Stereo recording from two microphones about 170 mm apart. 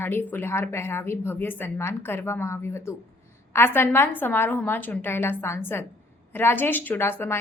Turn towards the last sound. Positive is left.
turn(degrees=15)  # may be behind; listen again after turning